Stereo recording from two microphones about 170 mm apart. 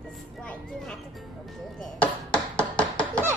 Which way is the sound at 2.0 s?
10° left (ahead or behind).